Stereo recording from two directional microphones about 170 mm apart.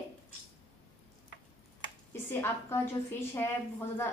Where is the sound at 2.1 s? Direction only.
15° left (ahead or behind).